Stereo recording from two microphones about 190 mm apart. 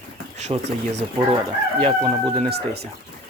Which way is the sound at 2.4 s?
55° right (ahead or behind).